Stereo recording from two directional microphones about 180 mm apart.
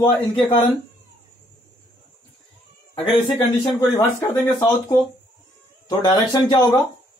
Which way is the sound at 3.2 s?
25° left (ahead or behind).